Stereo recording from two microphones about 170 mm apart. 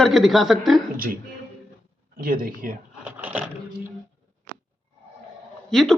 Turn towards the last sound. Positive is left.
turn(degrees=0)  # may be behind; listen again after turning